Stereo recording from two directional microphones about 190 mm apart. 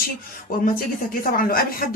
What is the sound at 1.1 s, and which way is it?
Speech, 50° left (ahead or behind).